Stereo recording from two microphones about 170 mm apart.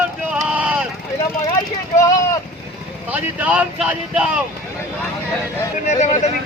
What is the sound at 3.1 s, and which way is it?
Speech, 10° right (ahead or behind).